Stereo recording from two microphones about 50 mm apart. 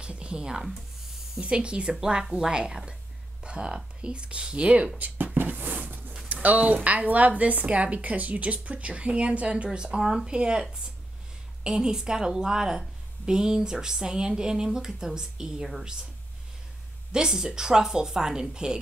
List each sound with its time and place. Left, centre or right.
0.0 s a sound: right
1.4 s a woman's voice: right
4.9 s a sound: right
6.2 s speech: right
9.7 s a woman's voice: centre
17.1 s a woman's voice: centre